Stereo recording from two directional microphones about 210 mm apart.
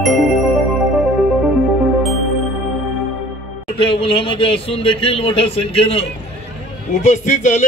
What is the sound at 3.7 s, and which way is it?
A man's voice, 25° left (ahead or behind).